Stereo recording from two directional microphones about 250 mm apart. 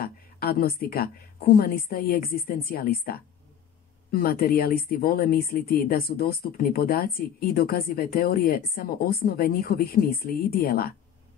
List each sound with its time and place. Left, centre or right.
0.0 s speech: left